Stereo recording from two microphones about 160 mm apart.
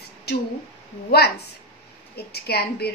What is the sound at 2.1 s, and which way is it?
Speech, 90° left.